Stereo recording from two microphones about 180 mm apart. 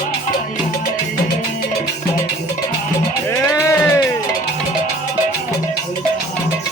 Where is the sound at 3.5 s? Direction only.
15° left (ahead or behind).